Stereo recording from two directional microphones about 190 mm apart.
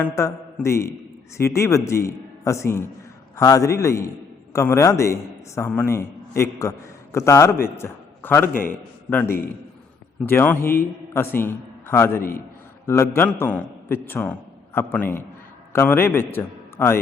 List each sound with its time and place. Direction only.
0.0 s a man's voice: 15° left (ahead or behind)